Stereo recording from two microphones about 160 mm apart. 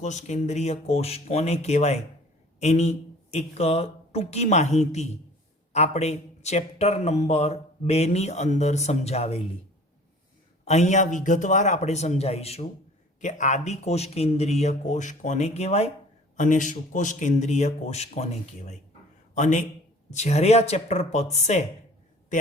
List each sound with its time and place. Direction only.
0.0 s a man's voice: 45° left (ahead or behind)
10.7 s a man's voice: 45° left (ahead or behind)
16.4 s a man's voice: 50° left (ahead or behind)